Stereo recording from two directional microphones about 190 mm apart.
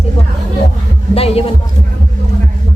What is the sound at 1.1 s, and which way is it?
Speech, 30° left (ahead or behind).